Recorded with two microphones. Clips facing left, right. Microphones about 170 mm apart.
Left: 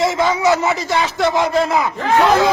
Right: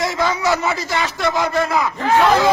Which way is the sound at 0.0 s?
25° left (ahead or behind).